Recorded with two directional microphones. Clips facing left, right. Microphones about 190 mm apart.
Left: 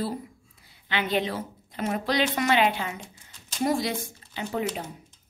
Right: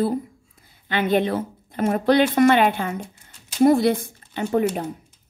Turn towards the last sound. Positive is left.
turn(degrees=-50)  # may be behind; listen again after turning